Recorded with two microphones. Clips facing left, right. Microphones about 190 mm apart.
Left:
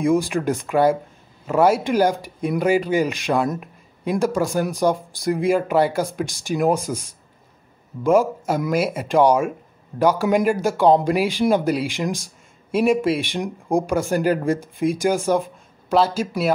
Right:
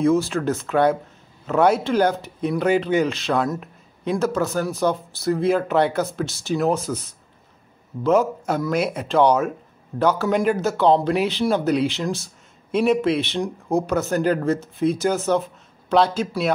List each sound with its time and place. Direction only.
0.0 s speech: 15° left (ahead or behind)